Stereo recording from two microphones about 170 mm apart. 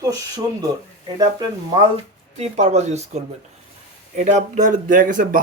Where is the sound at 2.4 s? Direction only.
40° right (ahead or behind).